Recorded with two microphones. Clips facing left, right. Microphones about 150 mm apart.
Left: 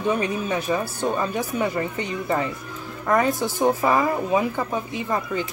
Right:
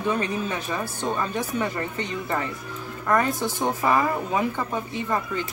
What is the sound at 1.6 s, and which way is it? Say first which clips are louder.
A woman's voice: left 3 dB; 15° left (ahead or behind).